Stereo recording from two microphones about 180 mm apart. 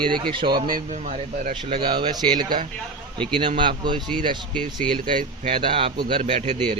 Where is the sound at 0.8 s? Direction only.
40° right (ahead or behind).